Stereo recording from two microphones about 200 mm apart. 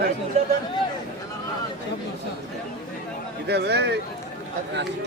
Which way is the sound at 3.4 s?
55° right (ahead or behind).